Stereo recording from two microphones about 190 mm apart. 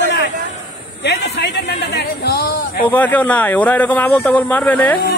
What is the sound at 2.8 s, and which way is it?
Speech, 10° left (ahead or behind).